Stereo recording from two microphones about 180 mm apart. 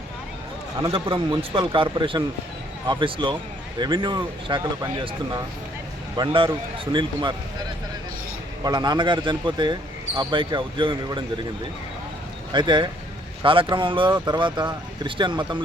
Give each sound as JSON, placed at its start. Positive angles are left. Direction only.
{"t": 0.8, "sound": "speech", "side_deg": -25}
{"t": 6.1, "sound": "speech", "side_deg": -25}
{"t": 8.6, "sound": "speech", "side_deg": -20}
{"t": 12.5, "sound": "speech", "side_deg": -25}